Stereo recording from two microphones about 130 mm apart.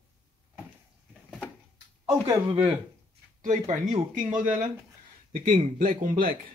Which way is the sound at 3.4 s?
75° right (ahead or behind).